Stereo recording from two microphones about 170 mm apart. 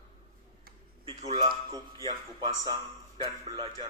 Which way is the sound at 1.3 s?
25° right (ahead or behind).